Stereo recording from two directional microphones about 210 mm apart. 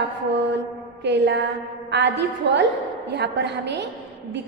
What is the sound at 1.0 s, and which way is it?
A woman's voice, 55° right (ahead or behind).